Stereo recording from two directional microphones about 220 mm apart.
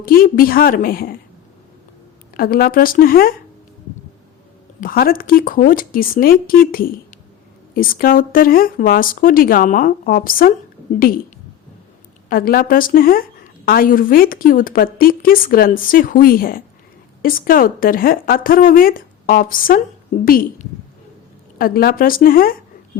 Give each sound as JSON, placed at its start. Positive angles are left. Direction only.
{"t": 0.0, "sound": "a woman's voice", "side_deg": 40}
{"t": 2.3, "sound": "a woman's voice", "side_deg": 45}
{"t": 4.8, "sound": "a woman's voice", "side_deg": 40}
{"t": 12.3, "sound": "a woman's voice", "side_deg": 40}